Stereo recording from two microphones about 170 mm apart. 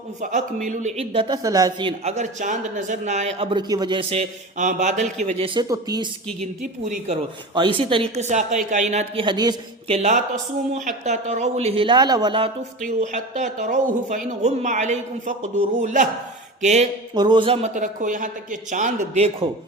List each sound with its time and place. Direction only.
0.2 s speech: 45° right (ahead or behind)
5.5 s speech: 20° right (ahead or behind)
6.4 s speech: 40° right (ahead or behind)
7.5 s speech: 30° right (ahead or behind)
9.2 s speech: 25° right (ahead or behind)
9.9 s speech: 45° right (ahead or behind); by 12.5 s 25° right (ahead or behind)
12.8 s speech: 45° right (ahead or behind)
17.2 s speech: 25° right (ahead or behind)